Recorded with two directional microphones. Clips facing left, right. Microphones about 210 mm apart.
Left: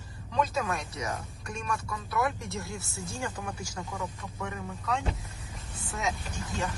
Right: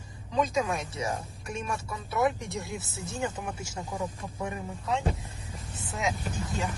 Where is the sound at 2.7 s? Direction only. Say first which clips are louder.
Right 3 dB; 20° right (ahead or behind).